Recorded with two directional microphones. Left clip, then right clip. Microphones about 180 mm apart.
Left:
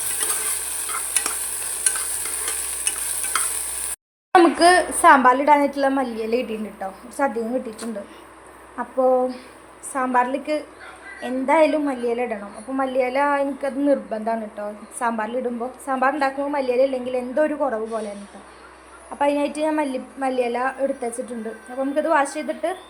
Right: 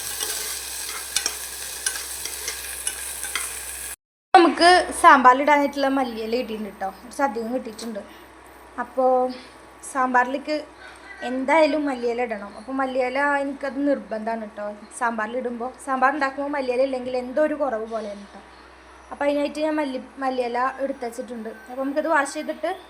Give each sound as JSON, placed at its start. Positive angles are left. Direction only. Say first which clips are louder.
{"t": 4.3, "sound": "a woman's voice", "louder": "even", "side_deg": -5}
{"t": 8.7, "sound": "a woman's voice", "louder": "left 1 dB", "side_deg": 0}
{"t": 19.2, "sound": "a woman's voice", "louder": "left 2 dB", "side_deg": 0}